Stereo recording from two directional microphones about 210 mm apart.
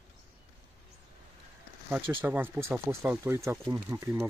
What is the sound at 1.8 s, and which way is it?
Speech, 5° right (ahead or behind).